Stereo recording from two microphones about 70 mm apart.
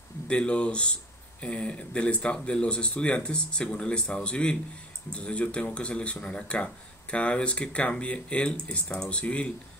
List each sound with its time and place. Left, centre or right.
0.3 s speech: centre